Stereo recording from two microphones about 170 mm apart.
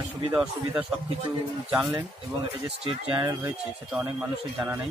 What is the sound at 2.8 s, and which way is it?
Speech, 30° right (ahead or behind).